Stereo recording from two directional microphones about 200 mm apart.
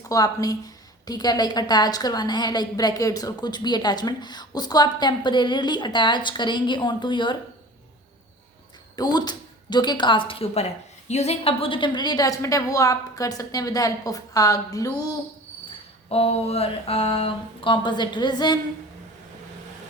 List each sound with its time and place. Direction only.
0.1 s a woman's voice: 20° left (ahead or behind)
9.0 s a woman's voice: 20° left (ahead or behind)
16.0 s a woman's voice: 30° left (ahead or behind)